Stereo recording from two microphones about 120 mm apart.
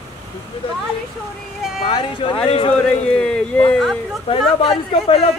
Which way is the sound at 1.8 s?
45° left (ahead or behind).